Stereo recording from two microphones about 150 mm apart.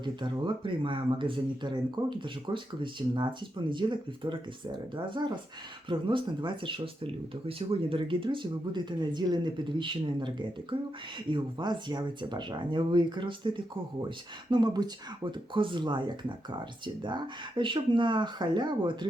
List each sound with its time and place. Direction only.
0.0 s speech: 30° right (ahead or behind)